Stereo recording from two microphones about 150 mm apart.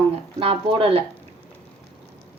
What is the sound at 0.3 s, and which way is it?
Speech, 35° right (ahead or behind).